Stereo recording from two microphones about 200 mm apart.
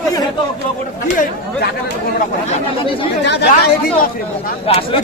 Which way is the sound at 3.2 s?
55° left (ahead or behind).